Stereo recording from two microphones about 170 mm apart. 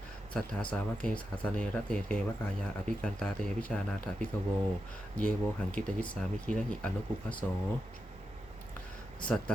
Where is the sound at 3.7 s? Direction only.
5° left (ahead or behind).